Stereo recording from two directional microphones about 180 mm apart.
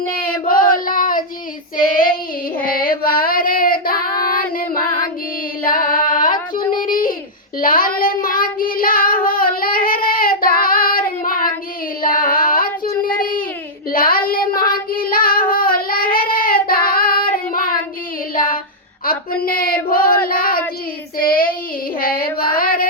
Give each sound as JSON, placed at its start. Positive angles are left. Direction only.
{"t": 0.1, "sound": "child singing", "side_deg": 50}
{"t": 2.6, "sound": "child singing", "side_deg": 55}
{"t": 5.6, "sound": "music", "side_deg": 50}
{"t": 6.1, "sound": "female singing", "side_deg": 50}
{"t": 6.3, "sound": "music", "side_deg": 25}
{"t": 6.8, "sound": "a sound", "side_deg": 50}
{"t": 7.6, "sound": "child singing", "side_deg": 50}
{"t": 12.0, "sound": "female singing", "side_deg": 50}
{"t": 13.9, "sound": "child singing", "side_deg": 55}
{"t": 18.3, "sound": "female singing", "side_deg": 50}
{"t": 19.0, "sound": "a sound", "side_deg": 55}
{"t": 21.2, "sound": "child singing", "side_deg": 55}